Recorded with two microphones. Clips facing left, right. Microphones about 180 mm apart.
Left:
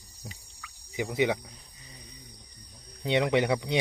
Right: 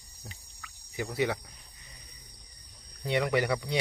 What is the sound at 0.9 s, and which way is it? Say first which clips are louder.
Speech: left 3 dB; 15° left (ahead or behind).